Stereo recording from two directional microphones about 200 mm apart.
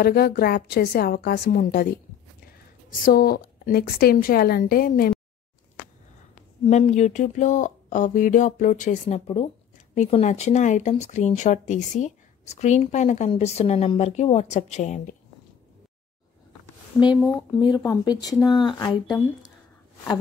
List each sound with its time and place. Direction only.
0.0 s a woman's voice: 50° left (ahead or behind)
3.1 s a woman's voice: 45° left (ahead or behind)
6.6 s speech: 30° left (ahead or behind)
17.3 s speech: 20° left (ahead or behind)